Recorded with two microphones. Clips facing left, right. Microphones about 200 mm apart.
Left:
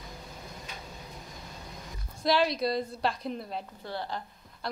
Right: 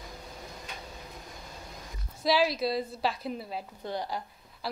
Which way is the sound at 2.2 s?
5° right (ahead or behind).